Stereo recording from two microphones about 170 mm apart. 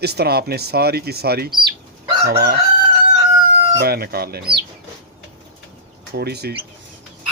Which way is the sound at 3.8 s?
65° right (ahead or behind).